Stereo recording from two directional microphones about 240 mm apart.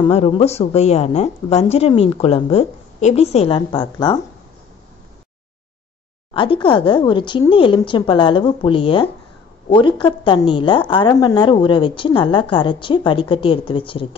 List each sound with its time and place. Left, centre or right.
0.0 s speech: left
6.3 s speech: left